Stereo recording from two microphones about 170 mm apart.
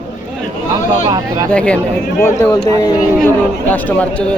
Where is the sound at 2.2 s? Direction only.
20° left (ahead or behind).